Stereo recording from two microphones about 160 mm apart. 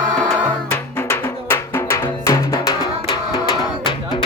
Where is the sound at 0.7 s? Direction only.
15° left (ahead or behind).